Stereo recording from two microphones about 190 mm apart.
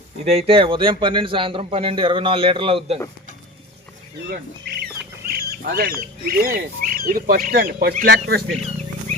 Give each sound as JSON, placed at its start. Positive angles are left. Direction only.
{"t": 0.3, "sound": "a man's voice", "side_deg": -30}
{"t": 4.8, "sound": "speech", "side_deg": -55}